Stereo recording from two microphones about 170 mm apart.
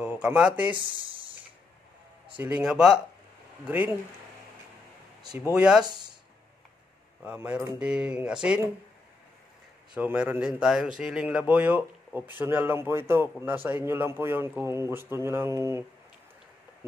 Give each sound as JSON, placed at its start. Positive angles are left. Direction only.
{"t": 0.0, "sound": "speech", "side_deg": -5}
{"t": 0.7, "sound": "speech", "side_deg": -30}
{"t": 2.3, "sound": "a man's voice", "side_deg": -5}
{"t": 5.5, "sound": "speech", "side_deg": -5}
{"t": 7.2, "sound": "a man's voice", "side_deg": -10}
{"t": 9.9, "sound": "a man's voice", "side_deg": -10}